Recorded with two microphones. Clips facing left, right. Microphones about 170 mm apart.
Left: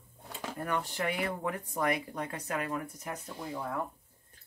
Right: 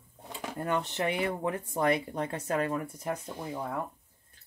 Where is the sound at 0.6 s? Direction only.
25° right (ahead or behind).